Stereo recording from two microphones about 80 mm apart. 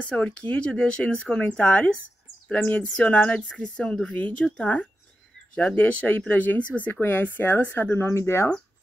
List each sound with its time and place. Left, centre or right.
0.1 s speech: centre; by 8.5 s left